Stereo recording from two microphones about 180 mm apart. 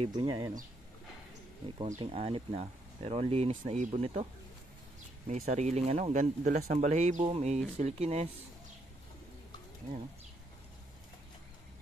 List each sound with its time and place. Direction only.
0.0 s speech: 25° right (ahead or behind)
1.9 s speech: 35° right (ahead or behind)
5.4 s speech: 40° right (ahead or behind)